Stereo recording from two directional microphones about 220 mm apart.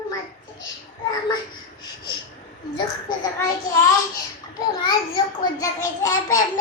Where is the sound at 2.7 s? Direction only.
20° left (ahead or behind).